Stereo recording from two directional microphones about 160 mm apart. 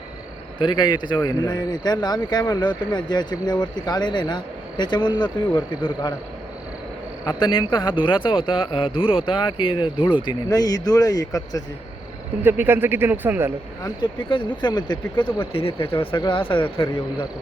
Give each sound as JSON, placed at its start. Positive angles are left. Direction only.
{"t": 0.6, "sound": "speech", "side_deg": 30}
{"t": 7.3, "sound": "speech", "side_deg": 30}
{"t": 12.4, "sound": "speech", "side_deg": -10}
{"t": 13.8, "sound": "speech", "side_deg": 30}